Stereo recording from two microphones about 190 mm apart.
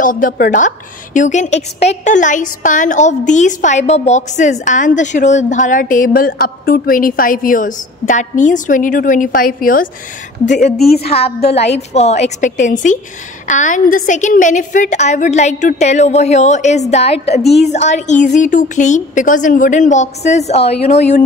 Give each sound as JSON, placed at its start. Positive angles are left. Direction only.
{"t": 0.0, "sound": "a woman's voice", "side_deg": 45}